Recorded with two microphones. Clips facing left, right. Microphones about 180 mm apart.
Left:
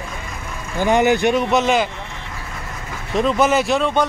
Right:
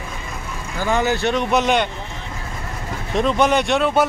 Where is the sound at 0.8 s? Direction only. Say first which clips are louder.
Left 4 dB; 20° left (ahead or behind).